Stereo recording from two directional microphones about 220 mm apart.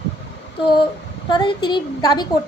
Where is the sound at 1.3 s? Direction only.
20° left (ahead or behind).